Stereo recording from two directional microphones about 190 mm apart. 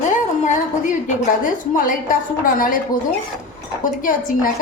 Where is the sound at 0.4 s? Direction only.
40° left (ahead or behind).